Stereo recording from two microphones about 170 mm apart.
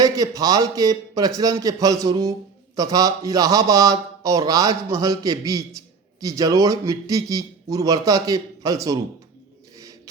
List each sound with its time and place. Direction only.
0.0 s a man's voice: 20° right (ahead or behind)